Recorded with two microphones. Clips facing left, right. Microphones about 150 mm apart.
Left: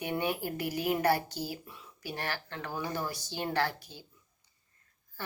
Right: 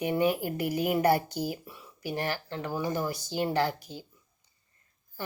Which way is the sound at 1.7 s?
5° right (ahead or behind).